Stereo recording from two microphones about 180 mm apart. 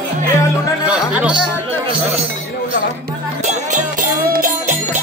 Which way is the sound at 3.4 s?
45° right (ahead or behind).